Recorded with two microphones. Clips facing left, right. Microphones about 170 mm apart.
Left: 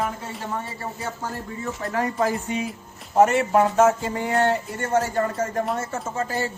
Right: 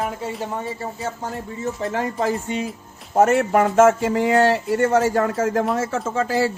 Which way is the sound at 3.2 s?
50° right (ahead or behind).